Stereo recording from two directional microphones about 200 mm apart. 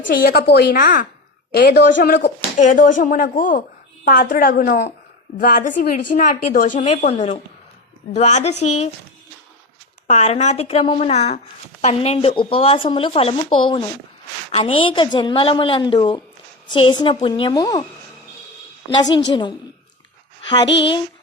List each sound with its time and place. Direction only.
0.1 s a woman's voice: 50° left (ahead or behind); by 8.9 s 35° left (ahead or behind)
10.1 s a woman's voice: 35° left (ahead or behind)
18.9 s speech: 25° left (ahead or behind)